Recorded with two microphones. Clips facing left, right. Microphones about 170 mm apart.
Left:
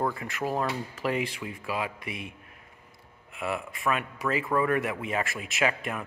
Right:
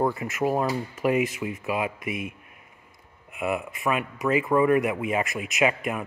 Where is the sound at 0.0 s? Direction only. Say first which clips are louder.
Right 5 dB; 20° right (ahead or behind).